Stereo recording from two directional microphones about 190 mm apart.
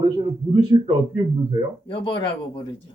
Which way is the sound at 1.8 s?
25° left (ahead or behind).